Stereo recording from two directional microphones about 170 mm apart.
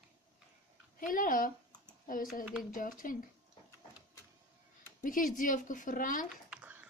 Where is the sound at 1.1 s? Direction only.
55° left (ahead or behind).